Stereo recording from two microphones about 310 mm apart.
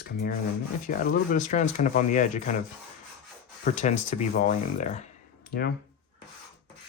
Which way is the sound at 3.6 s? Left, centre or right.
Left.